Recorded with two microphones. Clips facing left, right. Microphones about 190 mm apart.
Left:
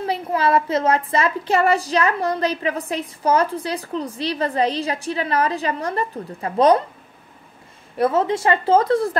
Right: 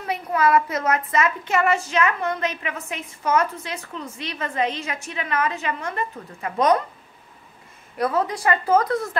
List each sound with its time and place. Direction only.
0.0 s a woman's voice: 30° left (ahead or behind)
8.0 s speech: 25° left (ahead or behind)